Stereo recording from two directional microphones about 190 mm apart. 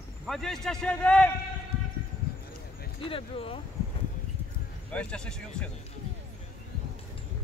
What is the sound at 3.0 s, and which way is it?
Speech, 30° left (ahead or behind).